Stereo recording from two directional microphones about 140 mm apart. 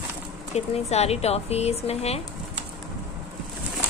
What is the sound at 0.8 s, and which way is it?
Speech, 50° left (ahead or behind).